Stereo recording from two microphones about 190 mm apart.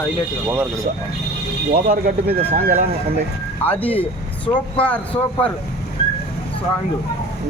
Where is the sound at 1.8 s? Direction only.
55° right (ahead or behind).